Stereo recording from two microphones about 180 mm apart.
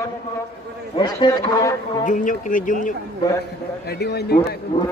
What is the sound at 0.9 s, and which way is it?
Speech, 25° left (ahead or behind).